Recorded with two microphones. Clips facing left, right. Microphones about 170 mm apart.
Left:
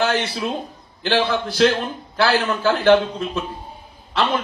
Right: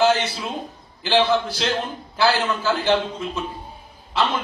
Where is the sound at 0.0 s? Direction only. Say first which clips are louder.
Right 2 dB; 60° left (ahead or behind).